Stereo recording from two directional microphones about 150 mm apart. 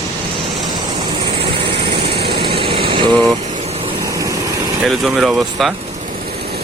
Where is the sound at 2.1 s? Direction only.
90° right.